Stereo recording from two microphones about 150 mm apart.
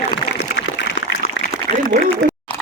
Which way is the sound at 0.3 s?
90° left.